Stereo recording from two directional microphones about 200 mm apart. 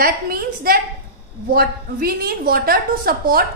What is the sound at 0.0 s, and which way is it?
A woman's voice, 50° right (ahead or behind).